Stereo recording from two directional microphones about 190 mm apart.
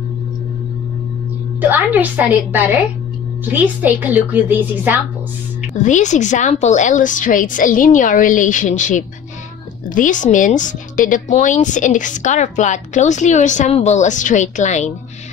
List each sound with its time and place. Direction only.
1.6 s a woman's voice: 10° right (ahead or behind)
5.8 s a woman's voice: 40° left (ahead or behind)